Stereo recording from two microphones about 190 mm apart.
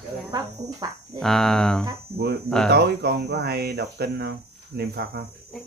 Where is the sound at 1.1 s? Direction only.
Centre (ahead or behind).